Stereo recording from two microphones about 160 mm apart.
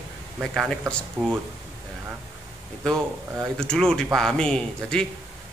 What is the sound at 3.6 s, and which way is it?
Speech, 5° left (ahead or behind).